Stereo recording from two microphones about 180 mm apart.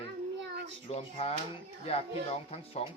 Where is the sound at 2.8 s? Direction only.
35° left (ahead or behind).